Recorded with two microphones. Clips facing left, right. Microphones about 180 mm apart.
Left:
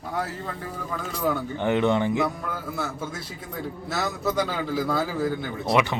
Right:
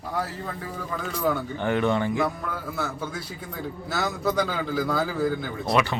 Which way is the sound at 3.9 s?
Centre (ahead or behind).